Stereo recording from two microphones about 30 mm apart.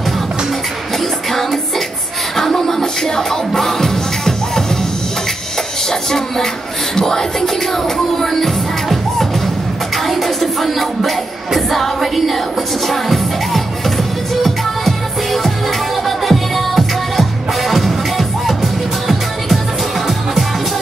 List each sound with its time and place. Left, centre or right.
2.3 s music: centre
5.9 s music: centre